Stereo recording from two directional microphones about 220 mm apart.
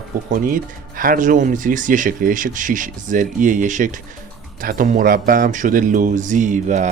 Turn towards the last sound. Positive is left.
turn(degrees=-35)  # may be behind; listen again after turning